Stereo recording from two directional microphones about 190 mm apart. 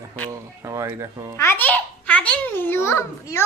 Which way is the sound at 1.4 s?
10° left (ahead or behind).